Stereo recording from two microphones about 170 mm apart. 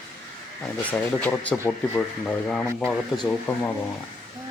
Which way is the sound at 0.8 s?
10° left (ahead or behind).